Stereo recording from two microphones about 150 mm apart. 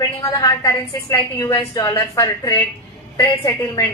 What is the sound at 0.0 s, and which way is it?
A woman's voice, 25° left (ahead or behind).